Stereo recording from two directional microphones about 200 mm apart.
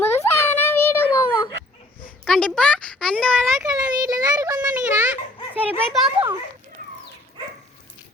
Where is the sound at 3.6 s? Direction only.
20° right (ahead or behind).